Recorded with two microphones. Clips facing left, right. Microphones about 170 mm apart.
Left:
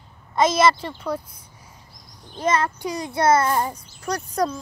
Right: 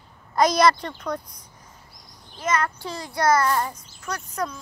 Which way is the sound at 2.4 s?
25° left (ahead or behind).